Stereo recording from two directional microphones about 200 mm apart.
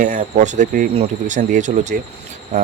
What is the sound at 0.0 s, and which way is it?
Speech, 40° right (ahead or behind).